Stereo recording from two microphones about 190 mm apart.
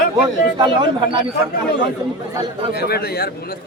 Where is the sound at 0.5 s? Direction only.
25° right (ahead or behind).